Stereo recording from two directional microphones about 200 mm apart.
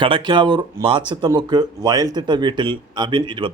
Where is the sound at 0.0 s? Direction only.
25° right (ahead or behind).